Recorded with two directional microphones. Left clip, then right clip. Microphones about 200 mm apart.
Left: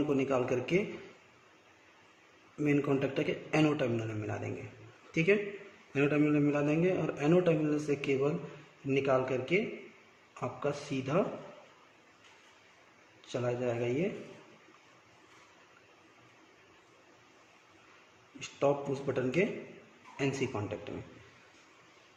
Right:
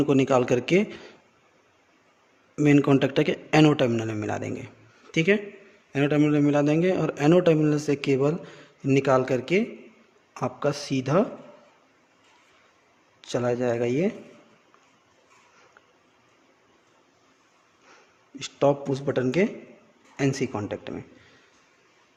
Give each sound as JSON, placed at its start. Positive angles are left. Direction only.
{"t": 0.1, "sound": "a man's voice", "side_deg": -45}
{"t": 2.6, "sound": "a man's voice", "side_deg": -45}
{"t": 13.3, "sound": "a man's voice", "side_deg": -45}
{"t": 18.3, "sound": "a man's voice", "side_deg": -45}